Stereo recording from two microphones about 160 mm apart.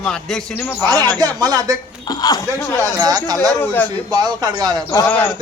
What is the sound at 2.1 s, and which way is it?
Speech, 25° left (ahead or behind).